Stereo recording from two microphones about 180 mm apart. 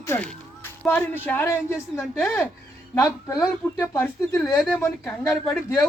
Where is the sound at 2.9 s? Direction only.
20° left (ahead or behind).